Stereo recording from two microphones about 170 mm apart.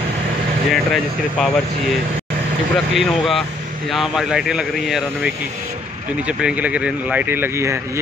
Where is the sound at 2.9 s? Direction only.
Centre (ahead or behind).